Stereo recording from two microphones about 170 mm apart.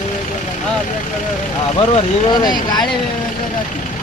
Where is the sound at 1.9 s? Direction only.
25° left (ahead or behind).